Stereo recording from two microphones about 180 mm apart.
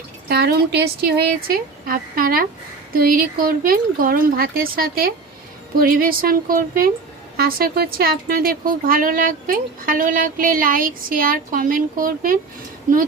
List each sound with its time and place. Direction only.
0.3 s speech: 60° right (ahead or behind)